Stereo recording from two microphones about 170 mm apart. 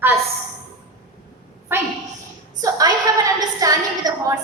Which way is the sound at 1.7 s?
15° right (ahead or behind).